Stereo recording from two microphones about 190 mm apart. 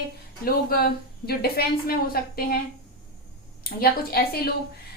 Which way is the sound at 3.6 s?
55° left (ahead or behind).